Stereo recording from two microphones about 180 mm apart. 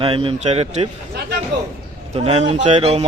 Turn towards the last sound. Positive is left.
turn(degrees=-35)  # may be behind; listen again after turning